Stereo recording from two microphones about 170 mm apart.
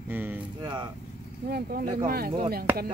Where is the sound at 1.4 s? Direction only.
65° right (ahead or behind).